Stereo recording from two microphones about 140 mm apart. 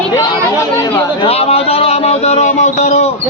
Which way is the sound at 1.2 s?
45° left (ahead or behind).